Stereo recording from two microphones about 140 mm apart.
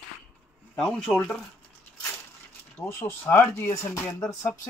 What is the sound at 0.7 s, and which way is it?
Speech, 5° left (ahead or behind).